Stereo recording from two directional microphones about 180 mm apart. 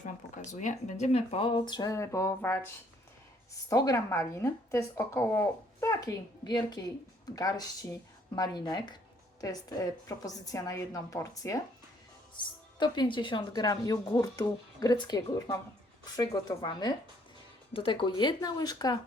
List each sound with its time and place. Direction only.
0.0 s speech: 45° left (ahead or behind); by 2.6 s 15° left (ahead or behind)
3.7 s speech: 15° left (ahead or behind)